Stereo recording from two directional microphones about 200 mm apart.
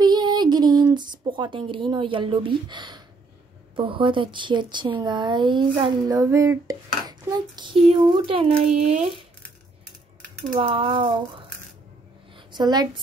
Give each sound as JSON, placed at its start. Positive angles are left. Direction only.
{"t": 0.0, "sound": "a sound", "side_deg": -20}
{"t": 0.9, "sound": "speech", "side_deg": -25}
{"t": 10.6, "sound": "speech", "side_deg": -25}
{"t": 12.5, "sound": "speech", "side_deg": -20}